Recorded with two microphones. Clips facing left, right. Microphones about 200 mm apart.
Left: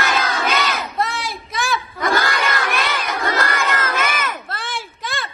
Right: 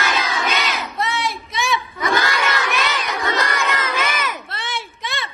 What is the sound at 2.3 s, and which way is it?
Crowd, 50° left (ahead or behind).